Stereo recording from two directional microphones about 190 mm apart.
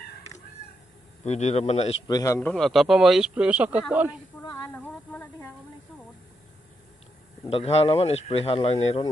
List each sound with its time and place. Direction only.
1.2 s a man's voice: 35° left (ahead or behind)
2.0 s speech: 20° left (ahead or behind)
2.5 s speech: centre (ahead or behind)
4.5 s speech: 15° left (ahead or behind)
7.4 s a man's voice: 30° left (ahead or behind)